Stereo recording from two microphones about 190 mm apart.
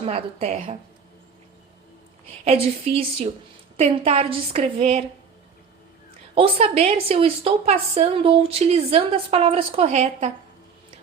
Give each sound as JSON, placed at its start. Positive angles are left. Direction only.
{"t": 0.0, "sound": "a woman's voice", "side_deg": -30}
{"t": 2.4, "sound": "a woman's voice", "side_deg": -35}
{"t": 6.3, "sound": "a woman's voice", "side_deg": -30}